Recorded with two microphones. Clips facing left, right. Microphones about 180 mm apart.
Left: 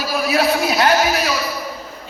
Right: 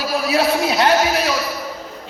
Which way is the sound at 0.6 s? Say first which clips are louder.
Even; 25° right (ahead or behind).